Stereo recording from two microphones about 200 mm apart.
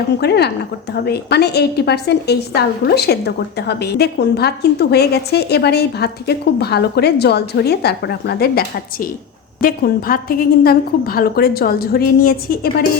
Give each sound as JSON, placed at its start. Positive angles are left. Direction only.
{"t": 0.2, "sound": "a woman's voice", "side_deg": 55}